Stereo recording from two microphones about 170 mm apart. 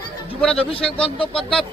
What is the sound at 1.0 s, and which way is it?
Speech, 30° left (ahead or behind).